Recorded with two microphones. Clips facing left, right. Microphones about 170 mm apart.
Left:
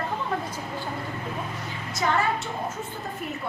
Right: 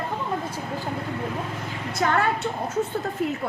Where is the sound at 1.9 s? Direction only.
55° right (ahead or behind).